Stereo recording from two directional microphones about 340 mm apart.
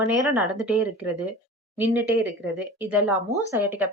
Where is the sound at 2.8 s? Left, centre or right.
Centre.